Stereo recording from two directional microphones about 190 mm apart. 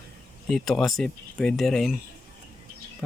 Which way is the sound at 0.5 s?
Centre (ahead or behind).